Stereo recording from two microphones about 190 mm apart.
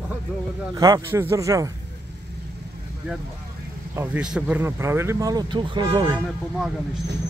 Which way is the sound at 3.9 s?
5° right (ahead or behind).